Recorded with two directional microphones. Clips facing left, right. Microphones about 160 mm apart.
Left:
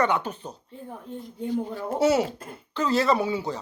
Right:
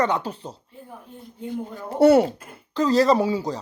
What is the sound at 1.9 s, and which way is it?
Speech, 60° right (ahead or behind).